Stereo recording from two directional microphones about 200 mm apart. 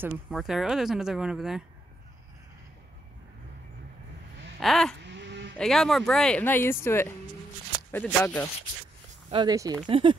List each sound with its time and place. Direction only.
0.0 s speech: centre (ahead or behind)
4.6 s vehicle: centre (ahead or behind)
5.0 s livestock: 60° right (ahead or behind)
5.6 s speech: centre (ahead or behind)
9.3 s speech: 20° right (ahead or behind)